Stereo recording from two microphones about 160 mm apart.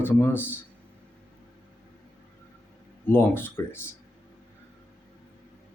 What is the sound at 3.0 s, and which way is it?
Speech, 15° left (ahead or behind).